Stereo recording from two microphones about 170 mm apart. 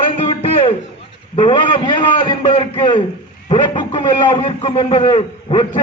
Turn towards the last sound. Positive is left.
turn(degrees=30)  # may be behind; listen again after turning